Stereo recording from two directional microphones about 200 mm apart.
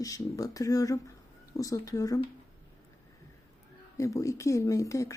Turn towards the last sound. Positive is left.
turn(degrees=15)  # may be behind; listen again after turning